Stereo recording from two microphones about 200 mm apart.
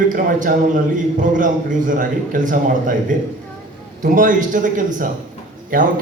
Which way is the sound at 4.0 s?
40° right (ahead or behind).